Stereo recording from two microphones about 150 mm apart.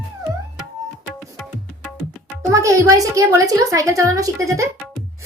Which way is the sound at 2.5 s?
20° right (ahead or behind).